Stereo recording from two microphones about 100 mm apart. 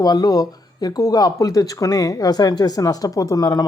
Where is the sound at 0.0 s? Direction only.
40° left (ahead or behind).